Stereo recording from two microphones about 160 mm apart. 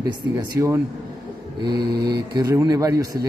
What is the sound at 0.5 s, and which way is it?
A man's voice, 15° right (ahead or behind).